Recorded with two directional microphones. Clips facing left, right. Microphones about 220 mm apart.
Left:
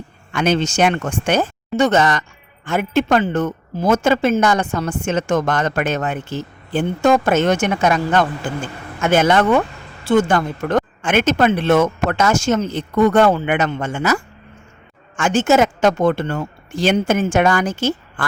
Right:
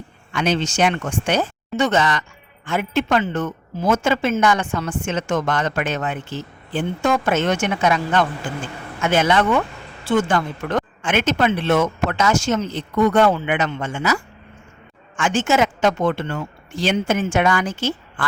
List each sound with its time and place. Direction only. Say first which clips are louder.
0.3 s speech: left 3 dB; 50° left (ahead or behind)